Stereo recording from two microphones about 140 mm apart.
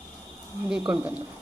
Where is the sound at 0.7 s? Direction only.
5° right (ahead or behind).